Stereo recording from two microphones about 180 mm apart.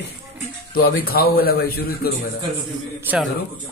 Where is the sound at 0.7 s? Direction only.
55° left (ahead or behind).